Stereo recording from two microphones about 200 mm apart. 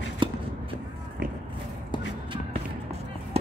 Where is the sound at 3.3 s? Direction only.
30° right (ahead or behind).